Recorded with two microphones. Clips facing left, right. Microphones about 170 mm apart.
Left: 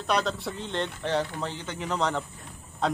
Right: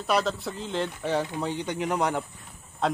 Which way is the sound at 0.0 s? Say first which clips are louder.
Right 1 dB; 5° right (ahead or behind).